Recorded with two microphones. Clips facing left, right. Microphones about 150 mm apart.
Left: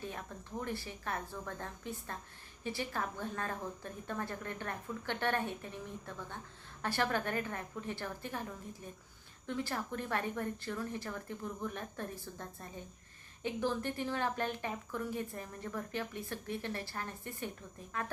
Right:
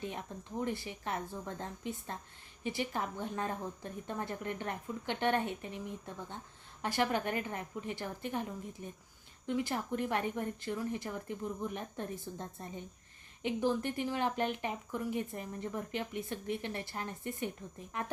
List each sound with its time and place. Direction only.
0.0 s a woman's voice: 20° right (ahead or behind)
9.5 s speech: 15° right (ahead or behind)